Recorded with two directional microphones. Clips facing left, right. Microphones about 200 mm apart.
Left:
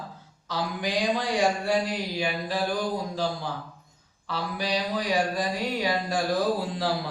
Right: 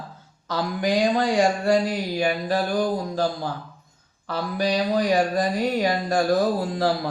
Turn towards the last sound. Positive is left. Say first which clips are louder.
# right 4 dB
turn(degrees=-45)  # may be behind; listen again after turning